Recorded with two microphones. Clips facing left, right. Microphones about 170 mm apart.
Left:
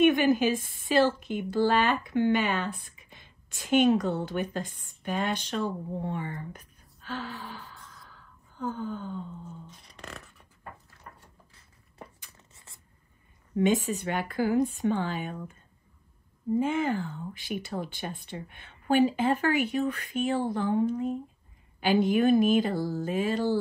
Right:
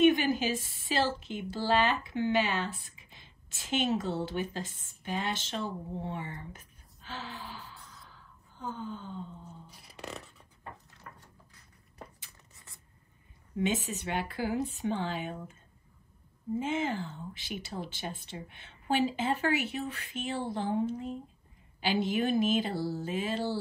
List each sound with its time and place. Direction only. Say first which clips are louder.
0.0 s a woman's voice: left 3 dB; 50° left (ahead or behind)
7.0 s gasp: left 5 dB; 45° left (ahead or behind)
8.6 s a woman's voice: left 5 dB; 50° left (ahead or behind)
9.8 s a sound: right 6 dB; 5° right (ahead or behind)
13.5 s a woman's voice: left 6 dB; 50° left (ahead or behind)
16.5 s a woman's voice: left 5 dB; 55° left (ahead or behind)